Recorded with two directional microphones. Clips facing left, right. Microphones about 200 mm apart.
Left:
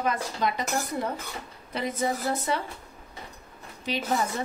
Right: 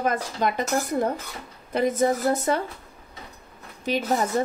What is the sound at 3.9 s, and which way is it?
Speech, 45° right (ahead or behind).